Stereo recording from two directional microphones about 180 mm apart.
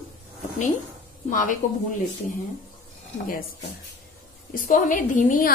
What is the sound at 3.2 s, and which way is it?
A woman's voice, 55° left (ahead or behind).